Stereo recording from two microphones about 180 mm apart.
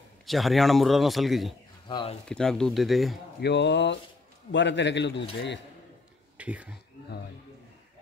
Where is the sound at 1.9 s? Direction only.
30° left (ahead or behind).